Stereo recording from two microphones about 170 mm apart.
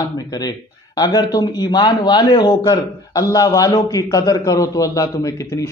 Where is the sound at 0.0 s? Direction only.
20° left (ahead or behind).